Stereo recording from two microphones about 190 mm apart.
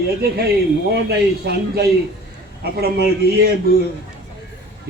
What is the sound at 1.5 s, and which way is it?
A man's voice, 60° right (ahead or behind).